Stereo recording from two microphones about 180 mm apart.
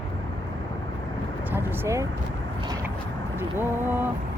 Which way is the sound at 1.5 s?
10° right (ahead or behind).